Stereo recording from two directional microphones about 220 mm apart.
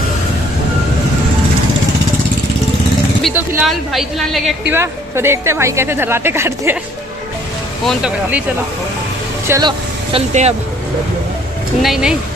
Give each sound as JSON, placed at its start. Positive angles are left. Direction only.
{"t": 3.3, "sound": "a woman's voice", "side_deg": -5}
{"t": 4.7, "sound": "a woman's voice", "side_deg": -10}
{"t": 7.8, "sound": "a woman's voice", "side_deg": 0}
{"t": 9.5, "sound": "speech", "side_deg": -20}
{"t": 11.8, "sound": "a woman's voice", "side_deg": 0}